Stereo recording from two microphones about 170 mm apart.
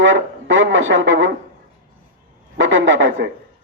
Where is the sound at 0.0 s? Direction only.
90° right.